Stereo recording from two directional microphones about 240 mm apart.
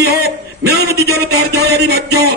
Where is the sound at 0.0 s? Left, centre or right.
Right.